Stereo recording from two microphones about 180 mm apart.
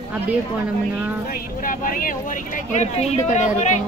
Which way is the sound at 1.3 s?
50° left (ahead or behind).